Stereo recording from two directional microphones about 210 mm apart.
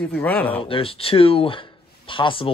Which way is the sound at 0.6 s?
25° left (ahead or behind).